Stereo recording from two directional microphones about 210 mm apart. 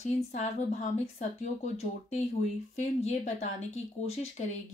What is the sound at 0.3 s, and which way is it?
A woman's voice, 35° left (ahead or behind).